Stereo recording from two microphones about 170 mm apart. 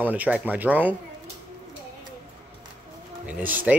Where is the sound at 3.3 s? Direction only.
10° right (ahead or behind).